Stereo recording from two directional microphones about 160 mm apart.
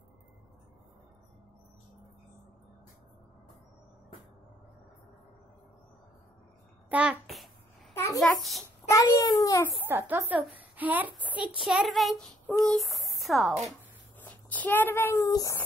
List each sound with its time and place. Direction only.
6.9 s a child's voice: 5° right (ahead or behind)
7.9 s a sound: 15° left (ahead or behind)
8.2 s a child's voice: centre (ahead or behind)
8.8 s a child's voice: 20° left (ahead or behind)
9.8 s a woman's voice: 10° right (ahead or behind); by 15.6 s 20° left (ahead or behind)